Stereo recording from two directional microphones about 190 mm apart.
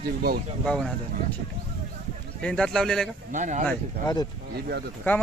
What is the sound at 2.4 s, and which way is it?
Speech, 5° left (ahead or behind).